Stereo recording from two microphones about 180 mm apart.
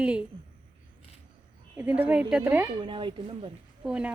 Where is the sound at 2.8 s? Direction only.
25° right (ahead or behind).